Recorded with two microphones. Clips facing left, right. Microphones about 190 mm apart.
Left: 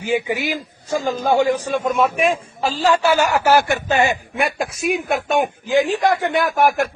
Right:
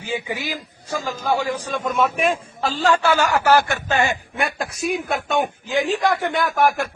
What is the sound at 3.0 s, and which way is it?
Speech, 15° left (ahead or behind).